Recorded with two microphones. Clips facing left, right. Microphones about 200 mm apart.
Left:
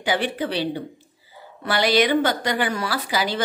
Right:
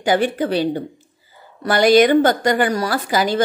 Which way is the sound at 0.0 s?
45° right (ahead or behind).